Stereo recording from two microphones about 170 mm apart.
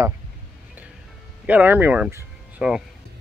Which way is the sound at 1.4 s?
10° right (ahead or behind).